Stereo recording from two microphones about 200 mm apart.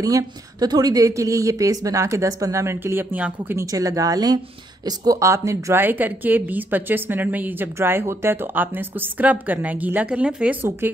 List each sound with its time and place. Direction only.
0.0 s speech: 20° right (ahead or behind)